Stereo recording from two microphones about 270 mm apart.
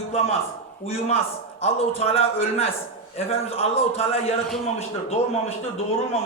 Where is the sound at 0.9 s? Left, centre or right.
Left.